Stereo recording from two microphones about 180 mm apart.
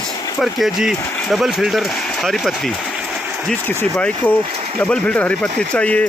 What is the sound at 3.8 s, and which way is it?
Speech, 10° left (ahead or behind).